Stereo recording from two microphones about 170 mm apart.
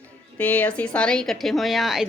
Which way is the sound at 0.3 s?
10° left (ahead or behind).